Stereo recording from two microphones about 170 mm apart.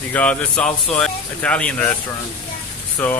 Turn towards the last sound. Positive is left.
turn(degrees=10)  # may be behind; listen again after turning